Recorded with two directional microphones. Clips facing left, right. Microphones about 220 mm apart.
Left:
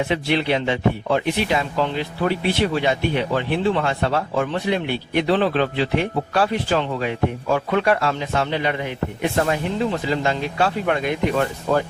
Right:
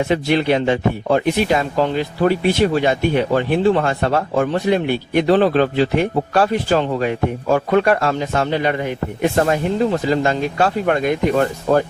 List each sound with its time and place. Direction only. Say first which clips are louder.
0.1 s speech: right 4 dB; 45° right (ahead or behind)